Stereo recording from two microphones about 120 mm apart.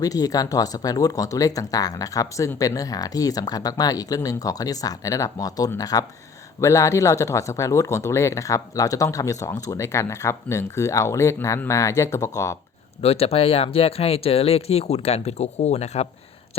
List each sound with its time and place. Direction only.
0.0 s speech: 30° left (ahead or behind)
13.0 s speech: 55° left (ahead or behind)